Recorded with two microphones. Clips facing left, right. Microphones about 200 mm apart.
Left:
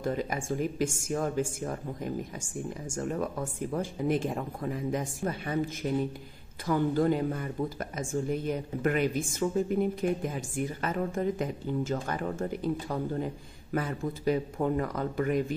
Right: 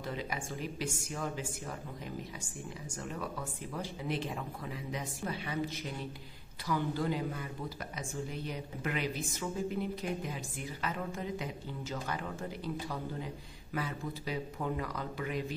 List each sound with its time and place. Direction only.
0.0 s a woman's voice: 45° left (ahead or behind)